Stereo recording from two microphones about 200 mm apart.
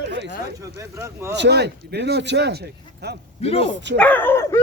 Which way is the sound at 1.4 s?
55° right (ahead or behind).